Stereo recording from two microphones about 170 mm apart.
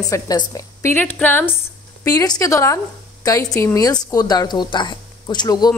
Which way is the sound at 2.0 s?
20° left (ahead or behind).